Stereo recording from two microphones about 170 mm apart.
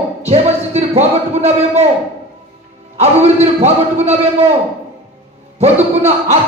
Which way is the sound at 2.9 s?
40° right (ahead or behind).